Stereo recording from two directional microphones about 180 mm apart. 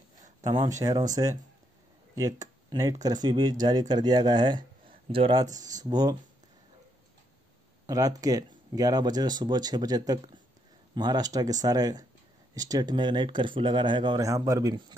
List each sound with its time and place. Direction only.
0.4 s speech: 20° right (ahead or behind)
5.6 s speech: 45° right (ahead or behind)
5.9 s speech: 20° right (ahead or behind)
7.8 s speech: 20° right (ahead or behind)